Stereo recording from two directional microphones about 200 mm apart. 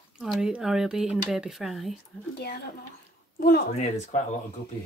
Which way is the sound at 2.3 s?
55° left (ahead or behind).